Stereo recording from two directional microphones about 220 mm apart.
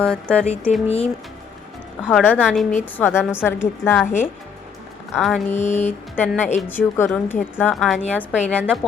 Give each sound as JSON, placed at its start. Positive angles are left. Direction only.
{"t": 0.0, "sound": "a woman's voice", "side_deg": 5}
{"t": 0.9, "sound": "speech", "side_deg": 25}
{"t": 2.0, "sound": "a woman's voice", "side_deg": -5}
{"t": 5.1, "sound": "a woman's voice", "side_deg": 0}
{"t": 5.5, "sound": "mantra", "side_deg": 30}
{"t": 6.1, "sound": "a woman's voice", "side_deg": 10}